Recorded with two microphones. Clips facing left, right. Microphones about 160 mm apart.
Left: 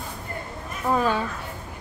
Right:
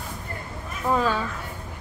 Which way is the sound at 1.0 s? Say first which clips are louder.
Left 2 dB; 15° left (ahead or behind).